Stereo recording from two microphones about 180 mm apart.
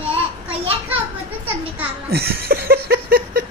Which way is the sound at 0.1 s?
30° right (ahead or behind).